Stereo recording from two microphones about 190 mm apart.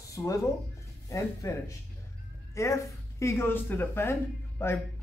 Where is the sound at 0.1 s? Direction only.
15° left (ahead or behind).